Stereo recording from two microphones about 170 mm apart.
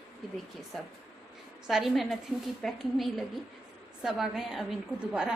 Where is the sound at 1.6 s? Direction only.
Centre (ahead or behind).